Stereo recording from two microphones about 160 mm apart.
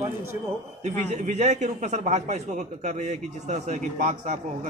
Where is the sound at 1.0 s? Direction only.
45° right (ahead or behind).